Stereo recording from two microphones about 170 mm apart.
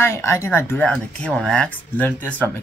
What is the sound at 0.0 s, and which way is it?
Speech, 15° left (ahead or behind).